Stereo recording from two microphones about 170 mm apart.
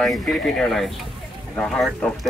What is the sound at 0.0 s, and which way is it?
Speech, centre (ahead or behind).